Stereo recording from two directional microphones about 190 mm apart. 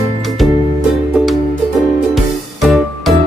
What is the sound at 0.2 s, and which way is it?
Music, centre (ahead or behind).